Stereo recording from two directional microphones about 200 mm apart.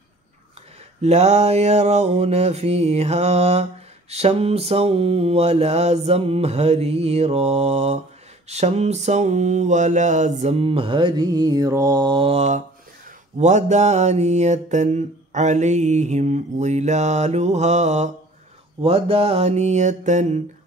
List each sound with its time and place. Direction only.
1.0 s mantra: 35° right (ahead or behind)